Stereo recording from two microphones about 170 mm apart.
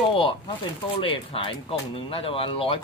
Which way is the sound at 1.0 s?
30° left (ahead or behind).